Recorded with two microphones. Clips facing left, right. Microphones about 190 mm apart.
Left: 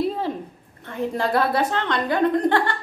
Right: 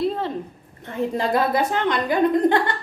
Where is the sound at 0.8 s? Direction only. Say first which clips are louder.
Right 1 dB; 15° right (ahead or behind).